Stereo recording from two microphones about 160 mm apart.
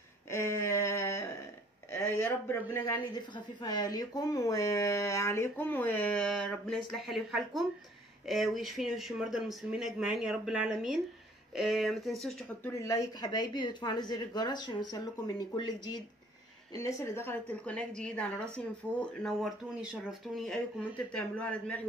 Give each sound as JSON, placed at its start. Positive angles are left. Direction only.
{"t": 0.3, "sound": "a sound", "side_deg": 15}
{"t": 1.9, "sound": "speech", "side_deg": 15}
{"t": 12.6, "sound": "a woman's voice", "side_deg": 20}